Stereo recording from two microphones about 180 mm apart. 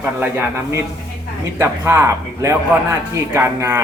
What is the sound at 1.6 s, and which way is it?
A man's voice, 15° right (ahead or behind).